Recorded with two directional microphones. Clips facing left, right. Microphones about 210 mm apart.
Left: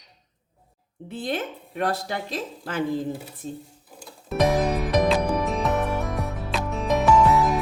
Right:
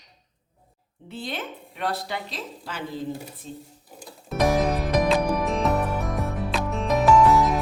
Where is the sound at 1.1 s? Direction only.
50° left (ahead or behind).